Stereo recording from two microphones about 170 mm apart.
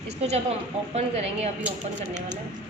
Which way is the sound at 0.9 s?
40° right (ahead or behind).